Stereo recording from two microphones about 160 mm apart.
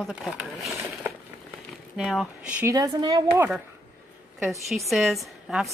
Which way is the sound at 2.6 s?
20° right (ahead or behind).